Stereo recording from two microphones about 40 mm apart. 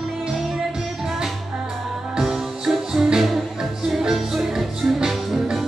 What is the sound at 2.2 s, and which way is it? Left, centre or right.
Music, centre.